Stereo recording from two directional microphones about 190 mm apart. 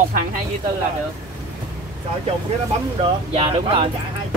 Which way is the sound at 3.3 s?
30° right (ahead or behind).